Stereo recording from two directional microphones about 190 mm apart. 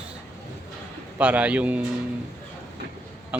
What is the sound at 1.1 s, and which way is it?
Speech, 10° right (ahead or behind).